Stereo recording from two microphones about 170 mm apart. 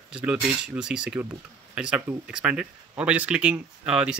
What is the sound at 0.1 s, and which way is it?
Speech, 5° right (ahead or behind).